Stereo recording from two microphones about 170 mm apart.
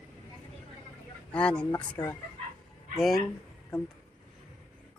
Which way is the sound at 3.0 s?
Centre (ahead or behind).